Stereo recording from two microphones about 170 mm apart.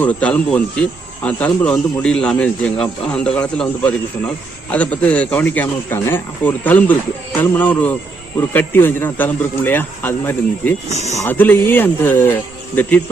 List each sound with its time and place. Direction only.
0.0 s speech: 10° left (ahead or behind)
10.9 s speech: 40° right (ahead or behind)
11.2 s speech: 10° left (ahead or behind)